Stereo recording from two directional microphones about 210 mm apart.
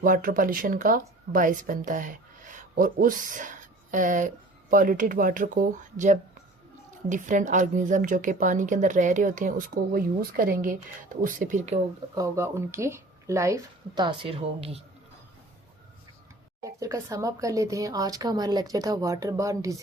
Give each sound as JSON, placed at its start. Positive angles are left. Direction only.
{"t": 0.0, "sound": "a woman's voice", "side_deg": -40}
{"t": 12.1, "sound": "speech", "side_deg": -15}
{"t": 16.6, "sound": "speech", "side_deg": -15}